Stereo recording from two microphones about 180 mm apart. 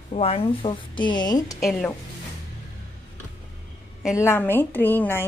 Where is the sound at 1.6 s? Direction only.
5° left (ahead or behind).